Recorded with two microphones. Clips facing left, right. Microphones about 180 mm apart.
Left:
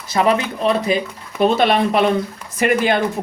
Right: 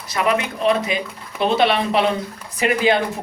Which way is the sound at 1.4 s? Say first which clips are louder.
Left 3 dB; 45° left (ahead or behind).